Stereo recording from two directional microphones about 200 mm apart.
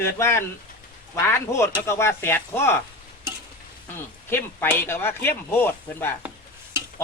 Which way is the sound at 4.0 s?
10° left (ahead or behind).